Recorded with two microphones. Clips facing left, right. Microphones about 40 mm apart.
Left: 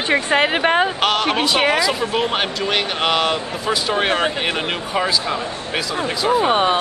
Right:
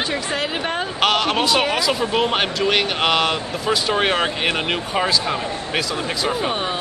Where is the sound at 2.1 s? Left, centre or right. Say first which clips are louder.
Right 1 dB; centre.